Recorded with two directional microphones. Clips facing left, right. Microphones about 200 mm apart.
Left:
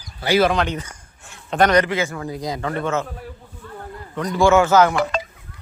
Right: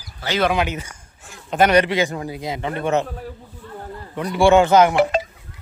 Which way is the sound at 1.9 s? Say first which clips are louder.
Right 2 dB; 15° right (ahead or behind).